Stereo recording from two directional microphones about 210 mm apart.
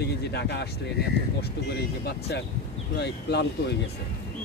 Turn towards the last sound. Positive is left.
turn(degrees=55)  # may be behind; listen again after turning